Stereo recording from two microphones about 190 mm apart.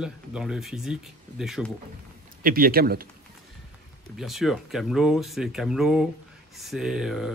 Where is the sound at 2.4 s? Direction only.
50° right (ahead or behind).